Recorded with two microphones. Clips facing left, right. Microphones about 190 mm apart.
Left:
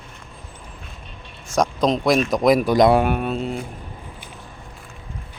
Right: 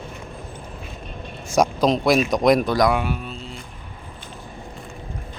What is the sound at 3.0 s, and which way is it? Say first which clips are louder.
Speech: left 7 dB; 60° left (ahead or behind).